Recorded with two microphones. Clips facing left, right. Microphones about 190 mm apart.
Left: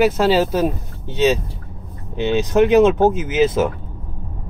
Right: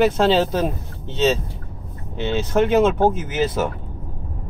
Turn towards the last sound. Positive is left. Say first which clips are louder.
# left 5 dB
turn(degrees=20)  # may be behind; listen again after turning